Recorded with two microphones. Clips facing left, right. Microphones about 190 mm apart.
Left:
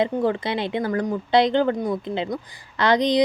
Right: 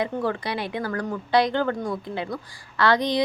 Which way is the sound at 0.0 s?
20° left (ahead or behind).